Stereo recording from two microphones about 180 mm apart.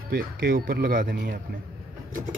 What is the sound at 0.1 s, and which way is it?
Speech, 55° right (ahead or behind).